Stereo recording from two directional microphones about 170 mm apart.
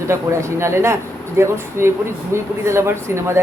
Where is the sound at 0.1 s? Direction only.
15° right (ahead or behind).